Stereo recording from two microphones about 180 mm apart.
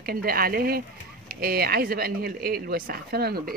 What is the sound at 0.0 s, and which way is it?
Speech, 55° right (ahead or behind).